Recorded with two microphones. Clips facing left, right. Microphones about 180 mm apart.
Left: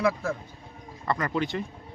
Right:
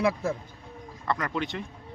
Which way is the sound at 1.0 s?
Centre (ahead or behind).